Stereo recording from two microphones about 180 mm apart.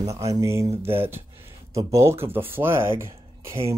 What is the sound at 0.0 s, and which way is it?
Speech, 20° right (ahead or behind).